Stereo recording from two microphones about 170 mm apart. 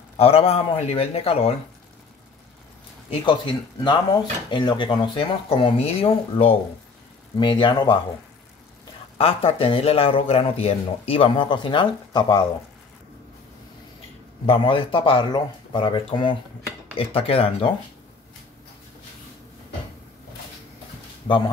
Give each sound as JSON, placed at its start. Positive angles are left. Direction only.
{"t": 0.2, "sound": "speech", "side_deg": 35}
{"t": 3.1, "sound": "speech", "side_deg": 30}
{"t": 9.2, "sound": "speech", "side_deg": 35}
{"t": 14.4, "sound": "speech", "side_deg": 30}
{"t": 21.3, "sound": "speech", "side_deg": 30}